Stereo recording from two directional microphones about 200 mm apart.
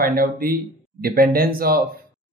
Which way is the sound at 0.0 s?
45° right (ahead or behind).